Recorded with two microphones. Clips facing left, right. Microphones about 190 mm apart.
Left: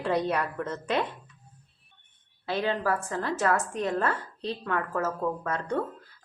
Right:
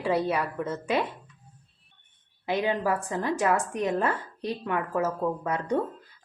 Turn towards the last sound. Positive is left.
turn(degrees=-15)  # may be behind; listen again after turning